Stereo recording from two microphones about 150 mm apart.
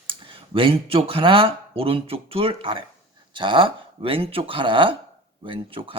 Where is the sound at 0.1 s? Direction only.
35° right (ahead or behind).